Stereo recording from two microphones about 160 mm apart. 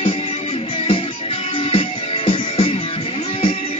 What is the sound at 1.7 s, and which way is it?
Music, 35° left (ahead or behind).